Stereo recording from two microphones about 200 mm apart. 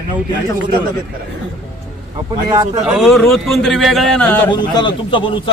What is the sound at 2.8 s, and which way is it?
A man's voice, centre (ahead or behind).